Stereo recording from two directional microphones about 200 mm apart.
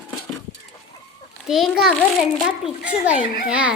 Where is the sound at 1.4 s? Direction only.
Centre (ahead or behind).